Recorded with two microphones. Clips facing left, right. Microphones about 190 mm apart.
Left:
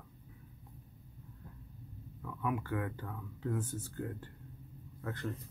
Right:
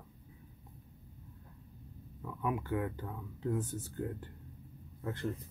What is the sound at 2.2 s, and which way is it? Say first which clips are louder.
A man's voice: right 1 dB; 20° right (ahead or behind).